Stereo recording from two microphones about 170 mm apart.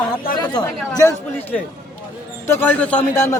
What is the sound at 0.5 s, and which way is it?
Speech, 20° left (ahead or behind).